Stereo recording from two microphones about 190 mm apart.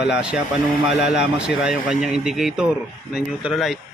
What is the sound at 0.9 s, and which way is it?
Speech, 60° left (ahead or behind).